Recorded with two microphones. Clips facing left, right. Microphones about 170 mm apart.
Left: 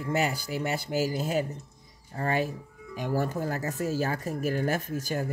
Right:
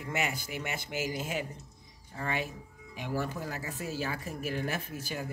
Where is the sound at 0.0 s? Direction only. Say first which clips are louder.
Left 6 dB; 35° left (ahead or behind).